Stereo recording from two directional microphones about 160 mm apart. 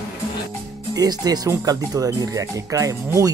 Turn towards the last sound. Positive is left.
turn(degrees=-20)  # may be behind; listen again after turning